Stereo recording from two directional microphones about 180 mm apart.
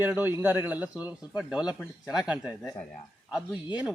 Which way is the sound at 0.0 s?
10° right (ahead or behind).